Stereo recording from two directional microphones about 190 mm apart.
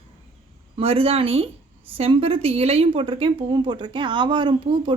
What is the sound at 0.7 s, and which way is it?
A woman's voice, 30° right (ahead or behind).